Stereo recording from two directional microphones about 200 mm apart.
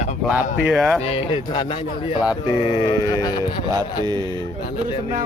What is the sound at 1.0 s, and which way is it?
Speech, 25° left (ahead or behind).